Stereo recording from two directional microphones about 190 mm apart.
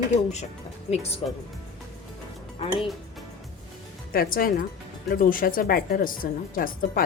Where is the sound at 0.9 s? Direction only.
35° left (ahead or behind).